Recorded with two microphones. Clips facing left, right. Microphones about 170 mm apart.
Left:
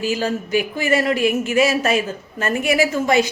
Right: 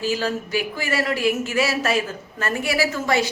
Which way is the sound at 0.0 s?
15° left (ahead or behind).